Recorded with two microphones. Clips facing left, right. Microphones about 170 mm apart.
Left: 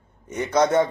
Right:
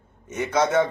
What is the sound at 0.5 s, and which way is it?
Speech, 15° left (ahead or behind).